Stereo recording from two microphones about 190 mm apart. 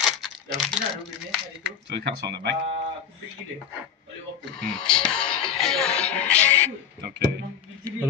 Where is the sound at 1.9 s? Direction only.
60° right (ahead or behind).